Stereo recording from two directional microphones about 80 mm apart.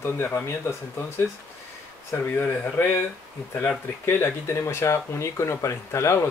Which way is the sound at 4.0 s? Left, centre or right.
Left.